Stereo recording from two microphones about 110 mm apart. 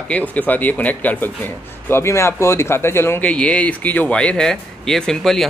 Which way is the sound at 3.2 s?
10° left (ahead or behind).